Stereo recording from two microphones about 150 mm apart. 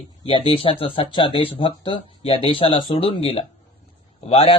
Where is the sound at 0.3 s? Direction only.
35° left (ahead or behind).